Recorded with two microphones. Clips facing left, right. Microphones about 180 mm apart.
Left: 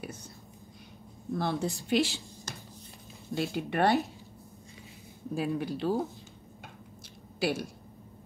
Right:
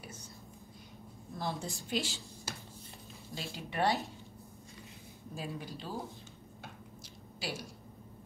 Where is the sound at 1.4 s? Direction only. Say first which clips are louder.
Left 6 dB; 65° left (ahead or behind).